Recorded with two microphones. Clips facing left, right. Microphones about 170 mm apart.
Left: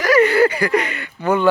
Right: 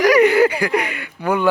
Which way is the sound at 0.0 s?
15° right (ahead or behind).